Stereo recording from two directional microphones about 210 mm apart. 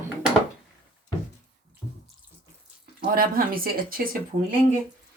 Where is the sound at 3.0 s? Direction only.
45° right (ahead or behind).